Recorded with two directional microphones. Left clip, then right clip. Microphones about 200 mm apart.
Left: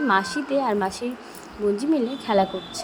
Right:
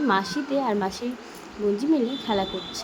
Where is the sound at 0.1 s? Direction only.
20° left (ahead or behind).